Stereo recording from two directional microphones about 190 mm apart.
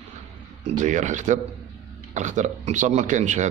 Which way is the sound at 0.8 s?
40° right (ahead or behind).